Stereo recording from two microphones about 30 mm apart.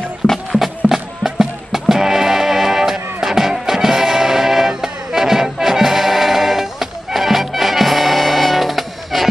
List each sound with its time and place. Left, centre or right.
0.2 s music: left
0.6 s music: centre